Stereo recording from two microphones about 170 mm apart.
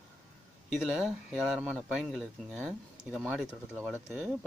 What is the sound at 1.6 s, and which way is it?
Speech, 5° left (ahead or behind).